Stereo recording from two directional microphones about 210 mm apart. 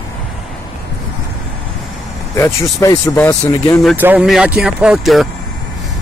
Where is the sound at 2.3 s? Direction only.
15° left (ahead or behind).